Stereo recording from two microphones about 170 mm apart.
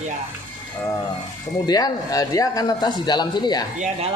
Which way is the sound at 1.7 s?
20° left (ahead or behind).